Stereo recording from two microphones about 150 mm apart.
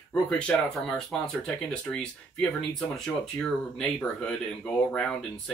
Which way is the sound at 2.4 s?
5° left (ahead or behind).